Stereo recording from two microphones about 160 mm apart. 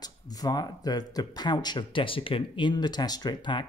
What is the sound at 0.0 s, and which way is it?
Speech, 25° left (ahead or behind).